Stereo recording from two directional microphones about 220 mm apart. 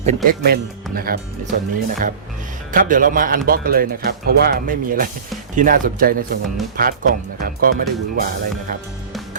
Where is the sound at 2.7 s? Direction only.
40° right (ahead or behind).